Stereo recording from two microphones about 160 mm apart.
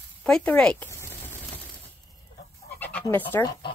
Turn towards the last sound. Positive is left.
turn(degrees=10)  # may be behind; listen again after turning